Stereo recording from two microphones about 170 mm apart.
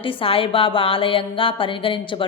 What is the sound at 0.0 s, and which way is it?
Speech, 30° left (ahead or behind).